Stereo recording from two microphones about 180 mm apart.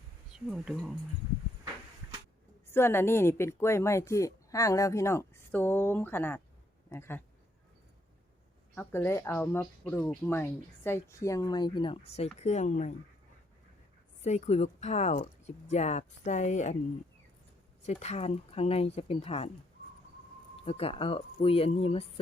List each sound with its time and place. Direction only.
0.3 s speech: 5° right (ahead or behind)
2.6 s speech: 15° left (ahead or behind)
8.7 s speech: 10° left (ahead or behind); by 12.9 s 40° left (ahead or behind)
14.2 s speech: 40° left (ahead or behind)
17.8 s speech: 40° left (ahead or behind)
20.7 s speech: 35° left (ahead or behind)